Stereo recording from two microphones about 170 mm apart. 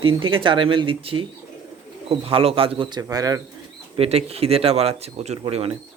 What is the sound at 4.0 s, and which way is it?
Speech, 35° right (ahead or behind).